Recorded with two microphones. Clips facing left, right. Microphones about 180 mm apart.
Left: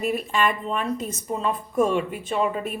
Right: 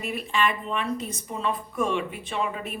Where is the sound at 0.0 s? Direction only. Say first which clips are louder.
Left 3 dB; 45° left (ahead or behind).